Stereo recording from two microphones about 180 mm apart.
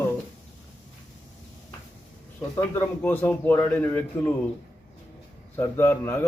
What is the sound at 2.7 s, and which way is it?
A man's voice, 10° left (ahead or behind).